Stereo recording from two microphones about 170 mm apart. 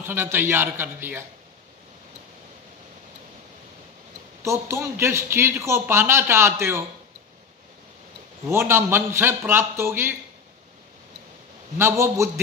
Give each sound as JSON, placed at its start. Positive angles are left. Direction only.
{"t": 0.0, "sound": "a man's voice", "side_deg": -15}
{"t": 4.4, "sound": "a man's voice", "side_deg": -15}
{"t": 8.5, "sound": "a man's voice", "side_deg": -15}
{"t": 11.8, "sound": "a man's voice", "side_deg": -15}